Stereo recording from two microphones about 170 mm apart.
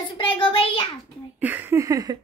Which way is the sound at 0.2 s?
30° left (ahead or behind).